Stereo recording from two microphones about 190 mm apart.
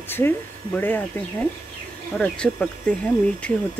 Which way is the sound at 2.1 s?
5° left (ahead or behind).